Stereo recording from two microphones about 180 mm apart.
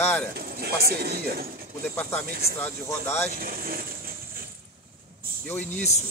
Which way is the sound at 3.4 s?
55° right (ahead or behind).